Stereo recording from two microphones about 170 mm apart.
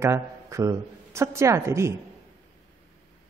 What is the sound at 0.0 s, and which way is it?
A woman's voice, 15° right (ahead or behind).